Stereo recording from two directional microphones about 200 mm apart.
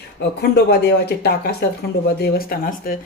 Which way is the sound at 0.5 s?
55° left (ahead or behind).